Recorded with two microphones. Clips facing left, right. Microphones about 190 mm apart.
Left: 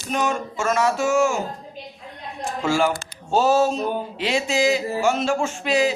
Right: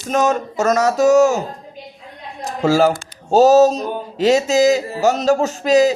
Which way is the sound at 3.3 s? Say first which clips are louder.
Right 8 dB; 40° right (ahead or behind).